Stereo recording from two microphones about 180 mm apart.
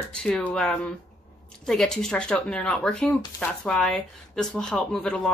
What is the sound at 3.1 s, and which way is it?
Speech, 15° left (ahead or behind).